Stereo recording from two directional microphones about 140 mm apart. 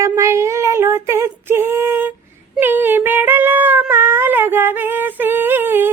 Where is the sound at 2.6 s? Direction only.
15° right (ahead or behind).